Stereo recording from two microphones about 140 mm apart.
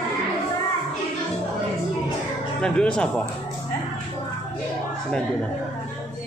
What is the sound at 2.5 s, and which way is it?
Speech, 5° left (ahead or behind).